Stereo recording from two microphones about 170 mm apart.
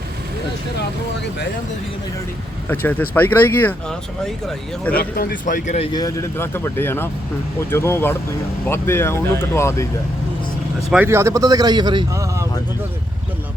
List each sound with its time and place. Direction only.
2.6 s speech: 10° left (ahead or behind)
4.9 s speech: 60° left (ahead or behind); by 5.9 s 45° left (ahead or behind)
5.9 s speech: 20° left (ahead or behind)
10.8 s a man's voice: 10° right (ahead or behind)